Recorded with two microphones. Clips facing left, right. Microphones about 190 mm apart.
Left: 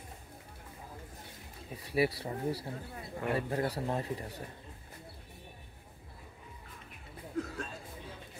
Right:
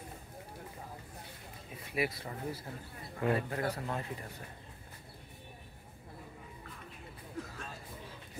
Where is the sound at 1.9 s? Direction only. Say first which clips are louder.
Left 5 dB; 35° left (ahead or behind).